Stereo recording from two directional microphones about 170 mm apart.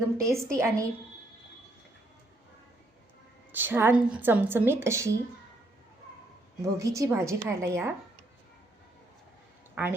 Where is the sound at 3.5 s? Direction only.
10° right (ahead or behind).